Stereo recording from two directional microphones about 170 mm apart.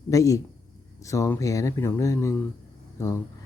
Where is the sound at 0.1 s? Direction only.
20° left (ahead or behind).